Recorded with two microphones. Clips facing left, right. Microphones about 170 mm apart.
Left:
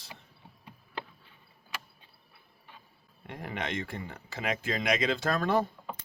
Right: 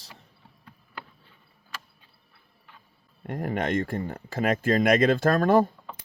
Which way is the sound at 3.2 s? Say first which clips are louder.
Right 8 dB; 50° right (ahead or behind).